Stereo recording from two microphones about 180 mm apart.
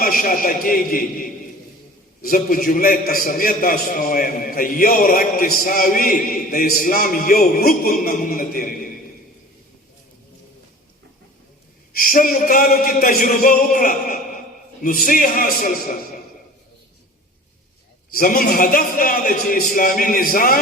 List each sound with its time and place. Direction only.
0.0 s a man's voice: 50° left (ahead or behind)
2.2 s a man's voice: 50° left (ahead or behind)
11.9 s a man's voice: 50° left (ahead or behind)
18.1 s a man's voice: 55° left (ahead or behind)